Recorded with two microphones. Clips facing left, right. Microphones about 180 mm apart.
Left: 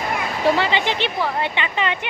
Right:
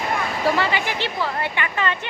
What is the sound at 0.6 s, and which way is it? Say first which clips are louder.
Speech: left 2 dB; 25° left (ahead or behind).